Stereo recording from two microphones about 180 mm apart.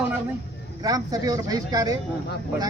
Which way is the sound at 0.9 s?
20° right (ahead or behind).